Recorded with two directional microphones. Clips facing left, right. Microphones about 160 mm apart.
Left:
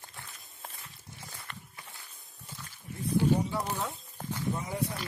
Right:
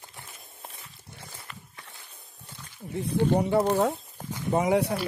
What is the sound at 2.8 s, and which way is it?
Speech, 65° right (ahead or behind).